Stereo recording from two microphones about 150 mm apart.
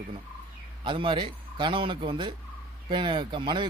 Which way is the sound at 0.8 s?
35° right (ahead or behind).